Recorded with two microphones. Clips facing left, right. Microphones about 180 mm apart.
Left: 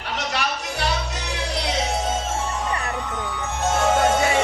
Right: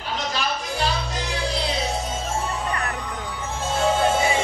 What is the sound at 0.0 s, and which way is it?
Music, 70° left (ahead or behind).